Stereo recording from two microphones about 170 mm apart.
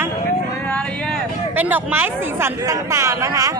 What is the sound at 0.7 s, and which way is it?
Speech, 5° left (ahead or behind).